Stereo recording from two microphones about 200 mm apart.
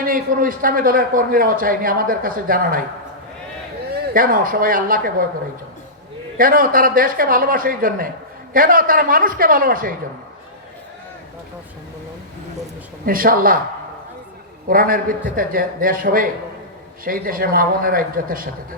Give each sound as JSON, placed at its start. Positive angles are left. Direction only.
{"t": 0.0, "sound": "a man's voice", "side_deg": -45}
{"t": 3.9, "sound": "a man's voice", "side_deg": -50}
{"t": 6.3, "sound": "a man's voice", "side_deg": -45}
{"t": 13.1, "sound": "a man's voice", "side_deg": -45}
{"t": 14.7, "sound": "a man's voice", "side_deg": -45}